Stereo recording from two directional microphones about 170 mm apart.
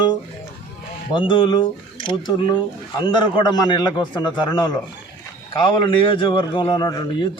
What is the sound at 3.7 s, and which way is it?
A man's voice, 25° left (ahead or behind).